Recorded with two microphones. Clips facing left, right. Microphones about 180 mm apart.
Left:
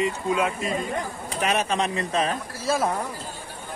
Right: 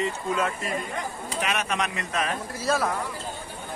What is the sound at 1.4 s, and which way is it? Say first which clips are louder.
Speech: left 5 dB; 30° left (ahead or behind).